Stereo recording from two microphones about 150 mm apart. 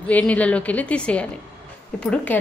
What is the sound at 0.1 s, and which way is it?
A woman's voice, 10° left (ahead or behind).